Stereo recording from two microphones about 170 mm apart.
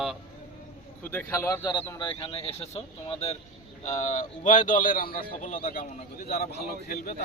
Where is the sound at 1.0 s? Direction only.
10° left (ahead or behind); by 7.2 s 55° left (ahead or behind).